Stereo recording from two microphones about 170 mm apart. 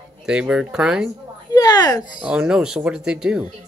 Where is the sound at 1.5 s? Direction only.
20° left (ahead or behind).